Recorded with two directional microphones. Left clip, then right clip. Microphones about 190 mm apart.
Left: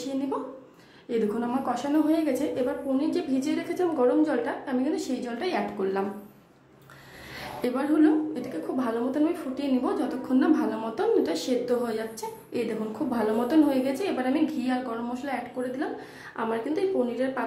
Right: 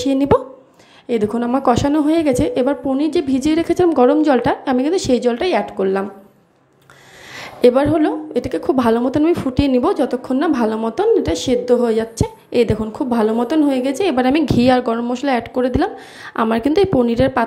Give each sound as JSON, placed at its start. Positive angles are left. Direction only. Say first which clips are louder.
{"t": 1.0, "sound": "a woman's voice", "louder": "right 9 dB", "side_deg": -45}
{"t": 7.3, "sound": "a woman's voice", "louder": "right 17 dB", "side_deg": -40}